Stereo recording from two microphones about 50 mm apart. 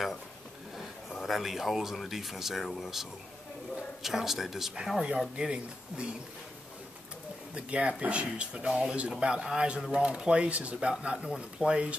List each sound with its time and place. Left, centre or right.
1.1 s speech: centre
5.3 s a man's voice: right
7.5 s a man's voice: right